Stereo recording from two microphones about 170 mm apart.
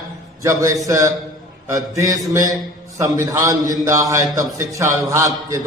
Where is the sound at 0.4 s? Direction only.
20° right (ahead or behind).